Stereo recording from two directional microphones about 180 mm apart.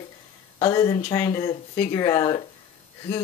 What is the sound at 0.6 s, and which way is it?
Speech, 20° left (ahead or behind).